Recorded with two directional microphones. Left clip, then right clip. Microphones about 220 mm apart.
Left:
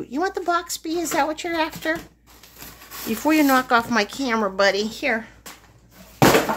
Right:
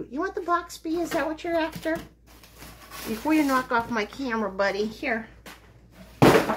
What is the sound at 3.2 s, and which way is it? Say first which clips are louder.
A woman's voice: left 5 dB; 50° left (ahead or behind).